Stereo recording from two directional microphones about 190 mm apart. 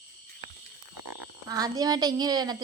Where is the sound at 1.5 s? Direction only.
20° right (ahead or behind).